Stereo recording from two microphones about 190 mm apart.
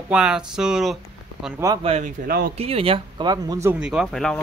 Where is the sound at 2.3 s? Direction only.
55° right (ahead or behind).